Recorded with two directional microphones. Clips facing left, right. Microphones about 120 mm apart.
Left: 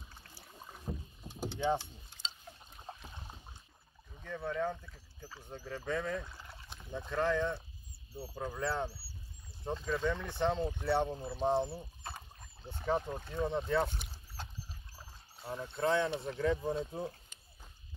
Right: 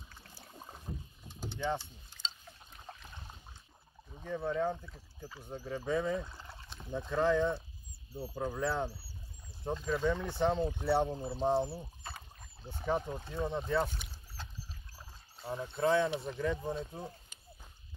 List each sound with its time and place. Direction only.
0.5 s rowboat: 15° right (ahead or behind)
2.9 s a sound: 10° left (ahead or behind)
4.1 s speech: 20° right (ahead or behind); by 13.8 s centre (ahead or behind)
15.4 s speech: 10° right (ahead or behind)
16.8 s speech: 10° left (ahead or behind)